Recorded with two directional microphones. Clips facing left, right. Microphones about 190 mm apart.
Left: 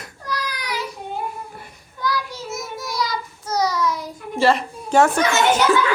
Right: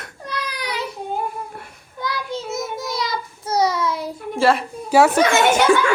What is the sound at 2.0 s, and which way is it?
Child singing, 25° right (ahead or behind).